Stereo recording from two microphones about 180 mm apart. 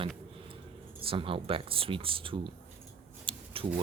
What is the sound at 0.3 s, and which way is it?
Speech, 30° right (ahead or behind).